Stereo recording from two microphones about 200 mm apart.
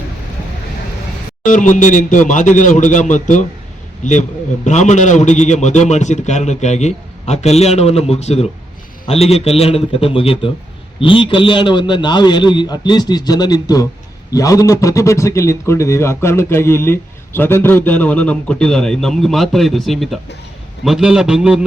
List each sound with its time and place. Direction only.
1.5 s a man's voice: 40° left (ahead or behind); by 21.6 s 5° right (ahead or behind)